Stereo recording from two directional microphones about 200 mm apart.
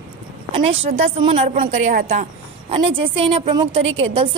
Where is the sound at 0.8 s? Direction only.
30° right (ahead or behind).